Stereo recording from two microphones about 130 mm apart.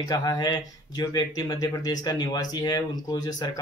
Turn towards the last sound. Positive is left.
turn(degrees=30)  # may be behind; listen again after turning